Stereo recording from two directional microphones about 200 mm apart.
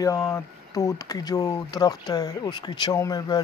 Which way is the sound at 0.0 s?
15° left (ahead or behind).